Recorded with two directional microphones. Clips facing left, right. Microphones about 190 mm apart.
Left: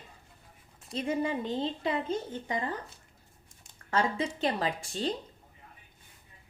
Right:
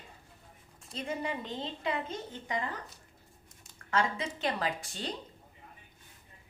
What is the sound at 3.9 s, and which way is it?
A woman's voice, 30° left (ahead or behind).